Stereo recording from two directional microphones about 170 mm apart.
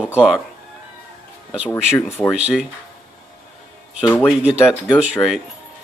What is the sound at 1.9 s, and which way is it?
Speech, 10° left (ahead or behind).